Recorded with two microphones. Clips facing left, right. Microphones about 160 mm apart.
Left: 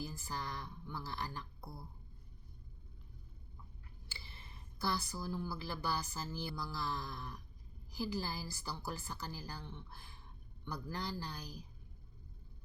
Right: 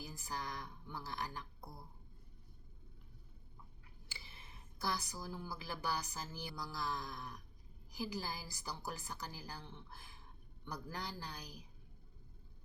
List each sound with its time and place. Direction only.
0.0 s a woman's voice: 15° right (ahead or behind)
4.1 s a woman's voice: 15° right (ahead or behind)